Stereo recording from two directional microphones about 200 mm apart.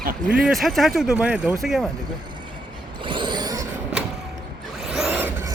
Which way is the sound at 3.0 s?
25° right (ahead or behind).